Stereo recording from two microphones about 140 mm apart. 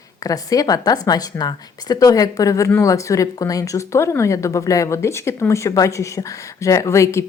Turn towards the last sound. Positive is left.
turn(degrees=20)  # may be behind; listen again after turning